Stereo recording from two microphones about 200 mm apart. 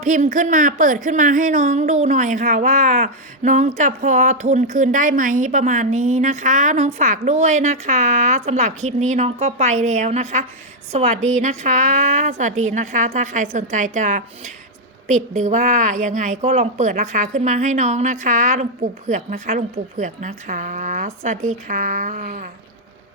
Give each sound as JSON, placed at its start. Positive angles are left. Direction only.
{"t": 0.0, "sound": "a woman's voice", "side_deg": -40}